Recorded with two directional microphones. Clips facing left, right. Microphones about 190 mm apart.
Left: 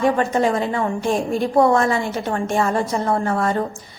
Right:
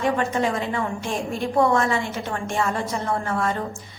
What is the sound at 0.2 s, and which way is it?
A woman's voice, 40° left (ahead or behind).